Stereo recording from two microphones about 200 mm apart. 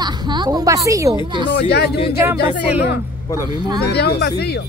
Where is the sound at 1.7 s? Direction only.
55° left (ahead or behind).